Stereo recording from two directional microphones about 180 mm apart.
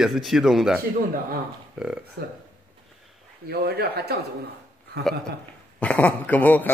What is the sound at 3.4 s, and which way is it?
Speech, 65° right (ahead or behind).